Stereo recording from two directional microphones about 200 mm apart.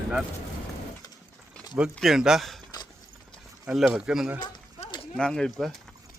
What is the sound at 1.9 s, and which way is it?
Speech, centre (ahead or behind).